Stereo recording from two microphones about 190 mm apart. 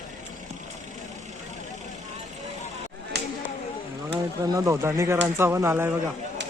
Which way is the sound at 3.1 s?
60° right (ahead or behind).